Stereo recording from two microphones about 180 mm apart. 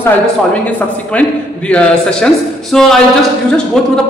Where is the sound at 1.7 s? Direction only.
5° left (ahead or behind).